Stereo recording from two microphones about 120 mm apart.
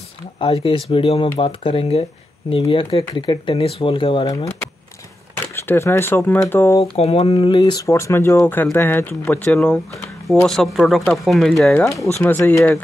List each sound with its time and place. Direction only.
0.4 s speech: 45° left (ahead or behind)
5.3 s speech: 20° left (ahead or behind)
6.8 s speech: 55° left (ahead or behind); by 7.8 s 40° left (ahead or behind)
7.8 s speech: 25° left (ahead or behind); by 11.9 s 5° left (ahead or behind)
12.2 s speech: 15° left (ahead or behind)